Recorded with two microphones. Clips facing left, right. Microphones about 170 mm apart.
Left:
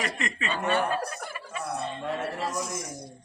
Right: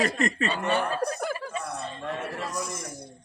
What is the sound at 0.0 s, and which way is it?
Speech, 40° right (ahead or behind).